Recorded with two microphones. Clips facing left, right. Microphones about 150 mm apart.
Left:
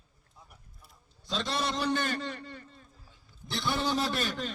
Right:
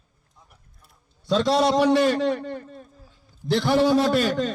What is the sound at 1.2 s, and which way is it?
A man's voice, 70° right (ahead or behind).